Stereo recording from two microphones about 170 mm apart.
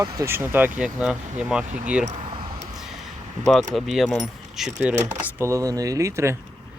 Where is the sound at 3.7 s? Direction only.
Centre (ahead or behind); by 6.4 s 15° right (ahead or behind).